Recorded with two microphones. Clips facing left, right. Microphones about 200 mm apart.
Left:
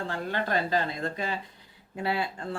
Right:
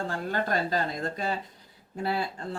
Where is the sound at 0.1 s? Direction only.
45° right (ahead or behind).